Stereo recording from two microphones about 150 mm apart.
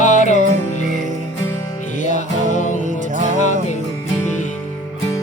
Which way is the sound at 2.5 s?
55° left (ahead or behind).